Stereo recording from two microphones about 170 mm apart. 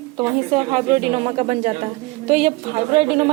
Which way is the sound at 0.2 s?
35° right (ahead or behind).